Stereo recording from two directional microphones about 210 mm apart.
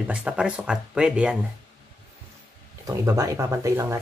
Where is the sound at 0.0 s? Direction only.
5° right (ahead or behind).